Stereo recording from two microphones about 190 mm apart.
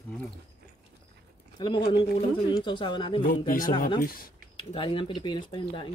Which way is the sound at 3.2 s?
50° left (ahead or behind).